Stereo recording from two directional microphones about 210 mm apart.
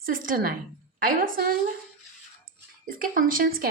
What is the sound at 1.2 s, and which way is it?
Speech, 40° right (ahead or behind).